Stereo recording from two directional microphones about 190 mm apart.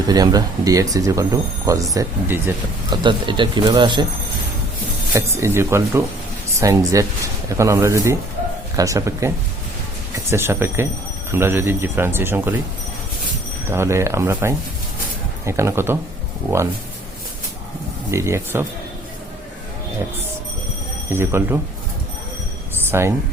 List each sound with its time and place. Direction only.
0.1 s speech: 20° right (ahead or behind)
5.1 s speech: 15° right (ahead or behind)
13.7 s speech: 15° right (ahead or behind)
18.1 s speech: 15° right (ahead or behind)
21.1 s speech: 10° right (ahead or behind)
22.9 s speech: 15° right (ahead or behind)